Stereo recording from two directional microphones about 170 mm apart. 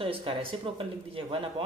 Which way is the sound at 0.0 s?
35° right (ahead or behind).